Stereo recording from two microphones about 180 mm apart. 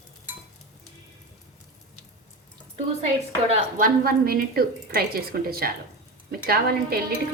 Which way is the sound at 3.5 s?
50° right (ahead or behind).